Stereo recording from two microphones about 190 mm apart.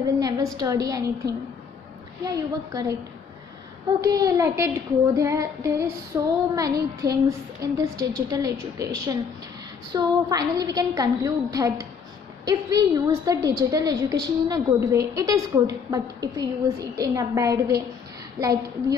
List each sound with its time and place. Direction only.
0.0 s a sound: 20° right (ahead or behind)
0.6 s child singing: 20° right (ahead or behind)
2.2 s a woman's voice: 20° right (ahead or behind)
4.0 s child singing: 20° right (ahead or behind)
9.9 s a woman's voice: 20° right (ahead or behind)
13.7 s child singing: 20° right (ahead or behind)
18.4 s a woman's voice: 20° right (ahead or behind)